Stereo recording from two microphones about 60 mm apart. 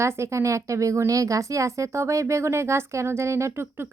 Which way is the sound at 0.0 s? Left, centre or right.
Right.